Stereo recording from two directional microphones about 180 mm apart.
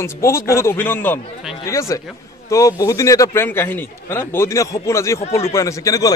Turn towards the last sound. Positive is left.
turn(degrees=20)  # may be behind; listen again after turning